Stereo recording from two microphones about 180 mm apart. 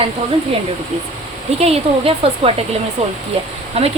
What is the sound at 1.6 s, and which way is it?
Speech, 35° right (ahead or behind).